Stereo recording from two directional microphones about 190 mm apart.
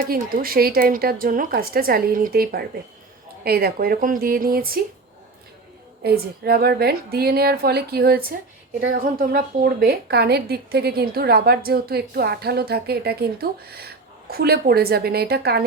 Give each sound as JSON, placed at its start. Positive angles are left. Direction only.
{"t": 0.0, "sound": "a woman's voice", "side_deg": -50}
{"t": 6.0, "sound": "a woman's voice", "side_deg": -55}